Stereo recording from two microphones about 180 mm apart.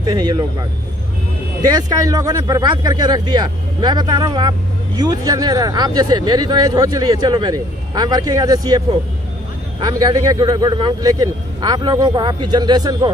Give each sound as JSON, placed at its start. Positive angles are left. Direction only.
{"t": 0.0, "sound": "speech", "side_deg": -25}
{"t": 1.7, "sound": "speech", "side_deg": -20}